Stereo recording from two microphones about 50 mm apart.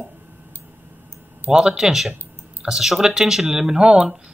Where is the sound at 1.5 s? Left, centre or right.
Centre.